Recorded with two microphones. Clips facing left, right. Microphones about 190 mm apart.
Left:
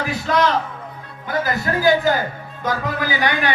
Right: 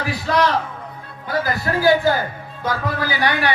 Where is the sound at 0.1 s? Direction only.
20° left (ahead or behind).